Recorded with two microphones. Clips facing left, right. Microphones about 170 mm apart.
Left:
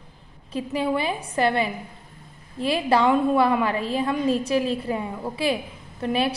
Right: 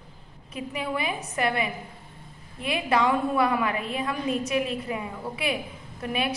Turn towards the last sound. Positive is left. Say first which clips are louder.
# left 5 dB
turn(degrees=30)  # may be behind; listen again after turning